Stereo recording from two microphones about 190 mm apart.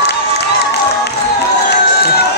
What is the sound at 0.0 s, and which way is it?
Crowd, 60° left (ahead or behind).